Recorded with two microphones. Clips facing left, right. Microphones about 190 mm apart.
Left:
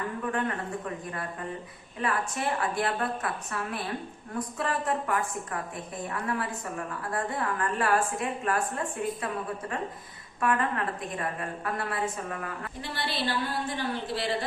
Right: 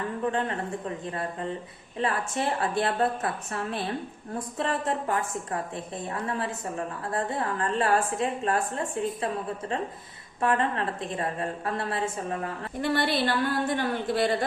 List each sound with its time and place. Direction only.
0.3 s a woman's voice: 25° right (ahead or behind)
2.0 s a woman's voice: 30° right (ahead or behind)
10.4 s a woman's voice: 30° right (ahead or behind)
12.8 s a woman's voice: 55° right (ahead or behind)